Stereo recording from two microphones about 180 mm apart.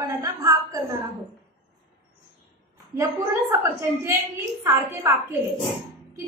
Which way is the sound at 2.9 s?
15° right (ahead or behind).